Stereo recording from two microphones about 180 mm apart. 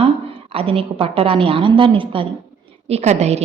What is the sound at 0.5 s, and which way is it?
A woman's voice, 30° right (ahead or behind).